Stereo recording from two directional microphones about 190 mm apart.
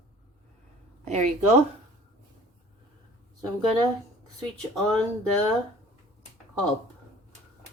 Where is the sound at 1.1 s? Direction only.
35° right (ahead or behind).